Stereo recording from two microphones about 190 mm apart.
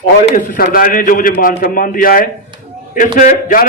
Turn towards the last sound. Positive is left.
turn(degrees=45)  # may be behind; listen again after turning